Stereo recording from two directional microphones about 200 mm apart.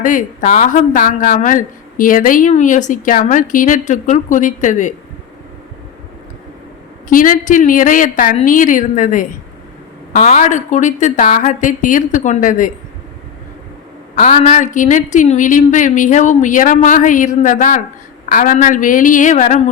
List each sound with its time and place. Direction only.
0.0 s a woman's voice: 40° left (ahead or behind)
7.1 s a woman's voice: 40° left (ahead or behind)
14.2 s a woman's voice: 35° left (ahead or behind)